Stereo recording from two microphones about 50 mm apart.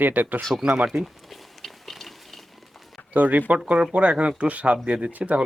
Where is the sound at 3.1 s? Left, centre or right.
Right.